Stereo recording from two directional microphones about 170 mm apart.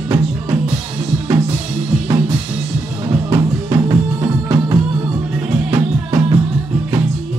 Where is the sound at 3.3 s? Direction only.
20° right (ahead or behind).